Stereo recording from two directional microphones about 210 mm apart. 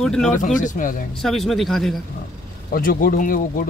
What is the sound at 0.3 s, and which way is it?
Speech, 40° left (ahead or behind).